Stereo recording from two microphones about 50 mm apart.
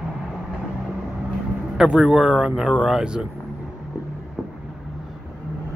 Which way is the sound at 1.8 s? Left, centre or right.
Centre.